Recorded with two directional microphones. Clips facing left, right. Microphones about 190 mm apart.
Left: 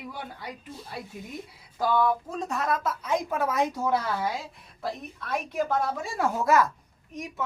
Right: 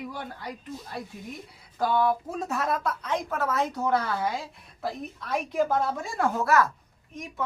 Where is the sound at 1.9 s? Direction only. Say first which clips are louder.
Even; 5° right (ahead or behind).